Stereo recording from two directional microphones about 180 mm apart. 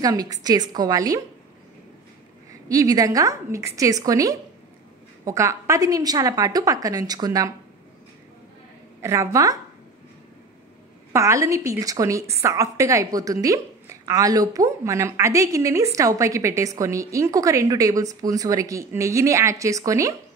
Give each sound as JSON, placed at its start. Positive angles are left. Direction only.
{"t": 0.0, "sound": "a woman's voice", "side_deg": -20}
{"t": 2.7, "sound": "a woman's voice", "side_deg": -20}
{"t": 9.0, "sound": "a woman's voice", "side_deg": -15}
{"t": 11.1, "sound": "a woman's voice", "side_deg": -15}